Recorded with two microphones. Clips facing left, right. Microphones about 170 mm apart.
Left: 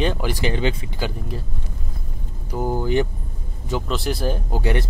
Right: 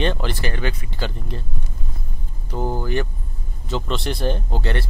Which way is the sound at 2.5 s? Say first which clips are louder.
Left 3 dB; 10° left (ahead or behind).